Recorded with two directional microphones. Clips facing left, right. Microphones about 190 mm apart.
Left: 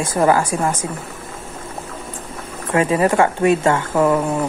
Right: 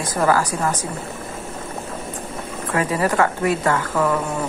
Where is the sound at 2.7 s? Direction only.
25° left (ahead or behind).